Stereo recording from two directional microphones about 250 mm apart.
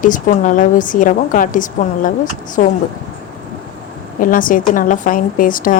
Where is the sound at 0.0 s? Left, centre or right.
Left.